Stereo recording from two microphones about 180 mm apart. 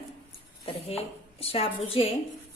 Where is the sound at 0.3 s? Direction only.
35° left (ahead or behind).